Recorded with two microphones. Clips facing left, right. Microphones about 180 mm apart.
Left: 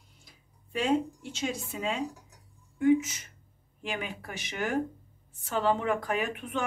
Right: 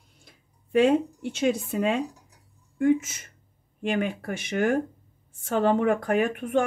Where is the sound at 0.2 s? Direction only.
55° right (ahead or behind).